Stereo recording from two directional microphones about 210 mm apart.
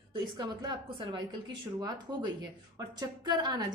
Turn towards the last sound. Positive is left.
turn(degrees=-20)  # may be behind; listen again after turning